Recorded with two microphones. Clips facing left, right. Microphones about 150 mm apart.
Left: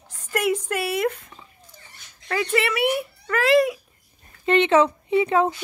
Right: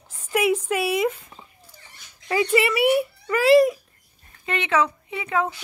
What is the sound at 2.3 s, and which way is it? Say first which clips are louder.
Speech: right 3 dB; 10° right (ahead or behind).